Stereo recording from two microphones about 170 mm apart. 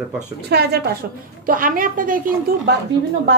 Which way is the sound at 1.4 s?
55° right (ahead or behind).